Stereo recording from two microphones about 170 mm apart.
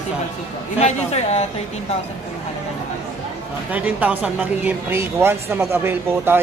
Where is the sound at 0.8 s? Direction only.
40° left (ahead or behind).